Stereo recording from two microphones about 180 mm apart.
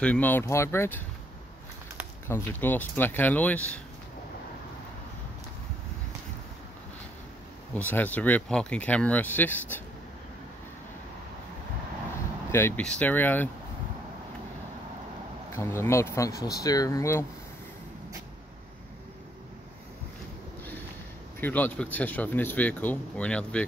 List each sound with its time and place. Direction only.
0.0 s speech: 10° left (ahead or behind)
2.2 s speech: 10° left (ahead or behind)
7.7 s speech: 10° left (ahead or behind)
12.4 s speech: 15° left (ahead or behind)
15.5 s speech: 15° left (ahead or behind)
21.4 s speech: 10° left (ahead or behind)